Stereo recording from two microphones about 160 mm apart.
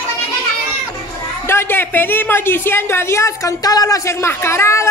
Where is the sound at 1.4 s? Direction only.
15° left (ahead or behind).